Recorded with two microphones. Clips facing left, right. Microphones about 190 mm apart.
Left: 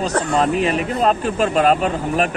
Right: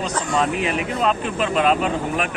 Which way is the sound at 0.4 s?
35° left (ahead or behind).